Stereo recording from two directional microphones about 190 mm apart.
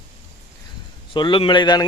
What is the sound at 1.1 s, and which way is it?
Speech, 25° left (ahead or behind).